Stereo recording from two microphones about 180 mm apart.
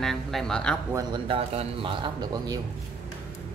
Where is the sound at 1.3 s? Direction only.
30° right (ahead or behind).